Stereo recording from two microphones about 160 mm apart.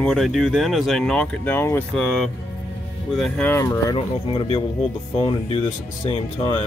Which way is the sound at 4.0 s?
35° left (ahead or behind).